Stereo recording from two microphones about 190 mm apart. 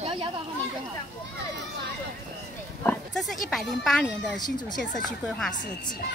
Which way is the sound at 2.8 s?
Centre (ahead or behind).